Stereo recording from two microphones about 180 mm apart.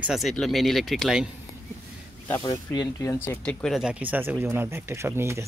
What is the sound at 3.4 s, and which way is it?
Speech, centre (ahead or behind).